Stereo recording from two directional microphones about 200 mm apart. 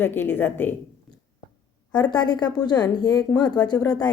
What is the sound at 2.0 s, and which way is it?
A woman's voice, 20° left (ahead or behind).